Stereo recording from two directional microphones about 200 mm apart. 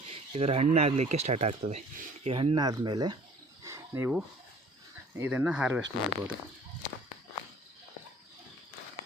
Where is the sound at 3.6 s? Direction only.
15° right (ahead or behind).